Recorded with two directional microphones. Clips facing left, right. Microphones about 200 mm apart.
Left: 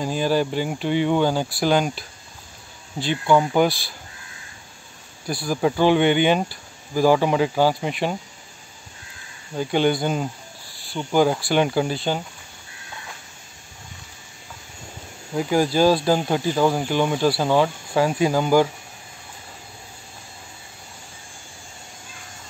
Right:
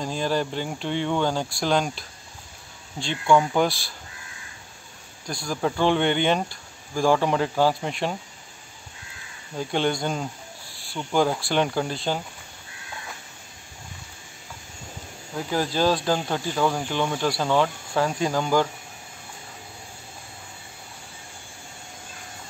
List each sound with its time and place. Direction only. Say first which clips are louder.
0.0 s speech: left 4 dB; 5° left (ahead or behind)
5.2 s speech: left 5 dB; 5° left (ahead or behind)
9.6 s speech: left 4 dB; 5° left (ahead or behind)
10.7 s cricket: left 2 dB; centre (ahead or behind)
11.1 s speech: left 4 dB; 5° left (ahead or behind)
15.3 s speech: left 6 dB; 10° left (ahead or behind)